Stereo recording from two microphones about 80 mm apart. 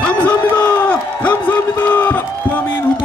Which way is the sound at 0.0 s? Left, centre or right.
Centre.